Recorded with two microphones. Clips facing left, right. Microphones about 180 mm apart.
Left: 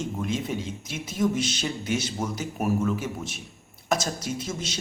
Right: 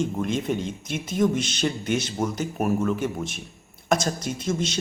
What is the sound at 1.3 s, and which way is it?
Speech, 5° left (ahead or behind).